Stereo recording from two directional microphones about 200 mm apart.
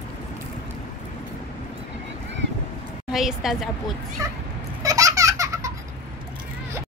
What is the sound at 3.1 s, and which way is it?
Speech, centre (ahead or behind).